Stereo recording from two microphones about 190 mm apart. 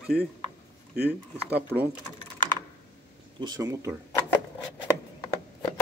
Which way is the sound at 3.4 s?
20° right (ahead or behind).